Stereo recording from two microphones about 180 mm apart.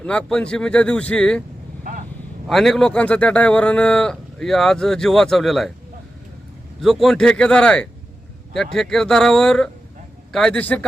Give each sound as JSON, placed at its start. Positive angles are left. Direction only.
{"t": 0.0, "sound": "speech", "side_deg": 5}
{"t": 1.8, "sound": "vehicle", "side_deg": -50}
{"t": 2.5, "sound": "speech", "side_deg": 0}
{"t": 6.8, "sound": "speech", "side_deg": 0}